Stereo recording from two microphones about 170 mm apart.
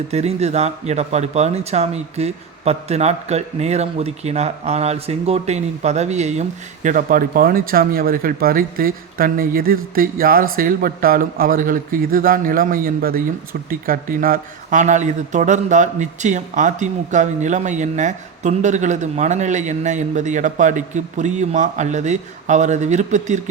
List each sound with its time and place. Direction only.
0.1 s speech: 40° right (ahead or behind)
6.8 s speech: 55° right (ahead or behind)